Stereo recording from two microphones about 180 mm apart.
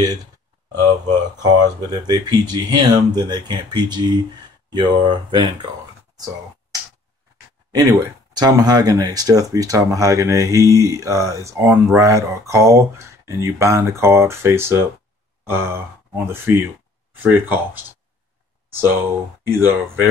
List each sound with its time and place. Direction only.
1.4 s speech: 20° right (ahead or behind)
6.1 s a sound: 20° right (ahead or behind)
8.3 s speech: 20° right (ahead or behind)
15.4 s sigh: 15° right (ahead or behind)
16.3 s speech: 15° right (ahead or behind)